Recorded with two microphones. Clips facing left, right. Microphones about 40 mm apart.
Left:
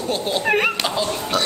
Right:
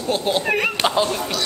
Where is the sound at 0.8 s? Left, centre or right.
Right.